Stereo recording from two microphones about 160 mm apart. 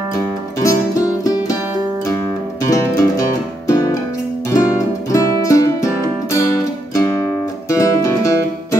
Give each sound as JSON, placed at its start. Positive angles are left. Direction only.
{"t": 0.6, "sound": "music", "side_deg": 20}
{"t": 2.6, "sound": "music", "side_deg": 20}